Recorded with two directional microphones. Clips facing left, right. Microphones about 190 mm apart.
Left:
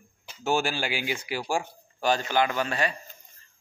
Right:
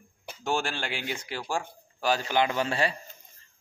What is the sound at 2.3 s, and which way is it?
Speech, 20° right (ahead or behind).